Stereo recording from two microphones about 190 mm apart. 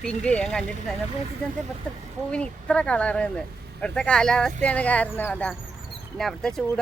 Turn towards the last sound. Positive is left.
turn(degrees=0)  # may be behind; listen again after turning